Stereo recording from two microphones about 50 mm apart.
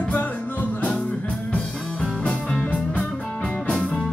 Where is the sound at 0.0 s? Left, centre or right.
Left.